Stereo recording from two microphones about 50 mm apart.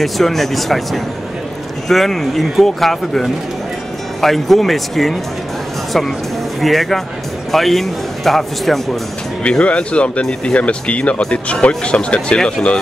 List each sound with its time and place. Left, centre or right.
0.0 s speech: centre
6.6 s speech: centre
9.4 s speech: left